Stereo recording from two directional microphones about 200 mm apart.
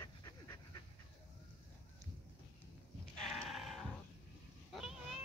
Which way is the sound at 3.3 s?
Centre (ahead or behind).